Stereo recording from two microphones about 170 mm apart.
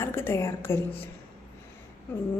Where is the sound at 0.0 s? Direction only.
15° left (ahead or behind).